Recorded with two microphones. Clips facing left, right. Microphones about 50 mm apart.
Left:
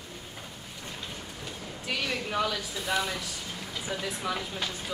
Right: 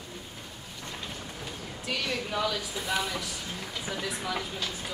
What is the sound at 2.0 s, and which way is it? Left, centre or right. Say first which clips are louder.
Speech: left 1 dB; centre.